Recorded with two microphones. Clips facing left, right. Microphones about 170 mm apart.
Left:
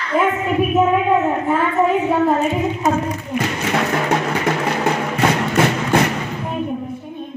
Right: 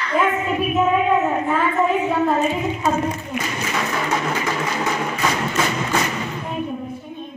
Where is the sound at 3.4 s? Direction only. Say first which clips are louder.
Left 7 dB; 60° left (ahead or behind).